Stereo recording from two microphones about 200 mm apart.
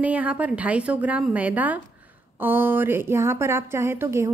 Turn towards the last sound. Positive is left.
turn(degrees=-15)  # may be behind; listen again after turning